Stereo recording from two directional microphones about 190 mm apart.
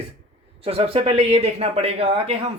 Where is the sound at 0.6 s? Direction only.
30° right (ahead or behind).